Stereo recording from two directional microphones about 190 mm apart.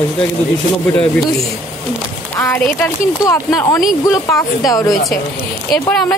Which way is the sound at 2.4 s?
10° left (ahead or behind).